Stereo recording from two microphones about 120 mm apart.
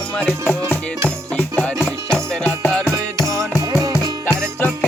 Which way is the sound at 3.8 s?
30° right (ahead or behind).